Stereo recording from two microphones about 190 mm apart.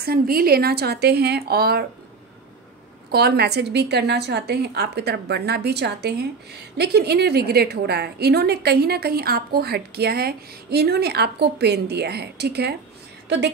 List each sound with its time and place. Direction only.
0.0 s a woman's voice: 50° right (ahead or behind)
3.1 s a woman's voice: 55° right (ahead or behind)